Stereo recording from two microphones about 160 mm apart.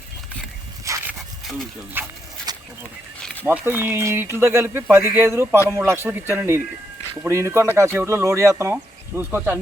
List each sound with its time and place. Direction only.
0.9 s dog: 20° right (ahead or behind)
2.0 s speech: 15° right (ahead or behind)
3.4 s speech: 10° right (ahead or behind)